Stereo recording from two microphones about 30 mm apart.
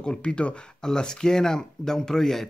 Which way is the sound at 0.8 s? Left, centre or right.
Left.